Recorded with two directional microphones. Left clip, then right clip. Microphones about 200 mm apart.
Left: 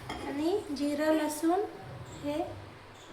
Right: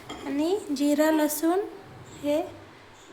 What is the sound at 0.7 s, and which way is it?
A woman's voice, 60° right (ahead or behind).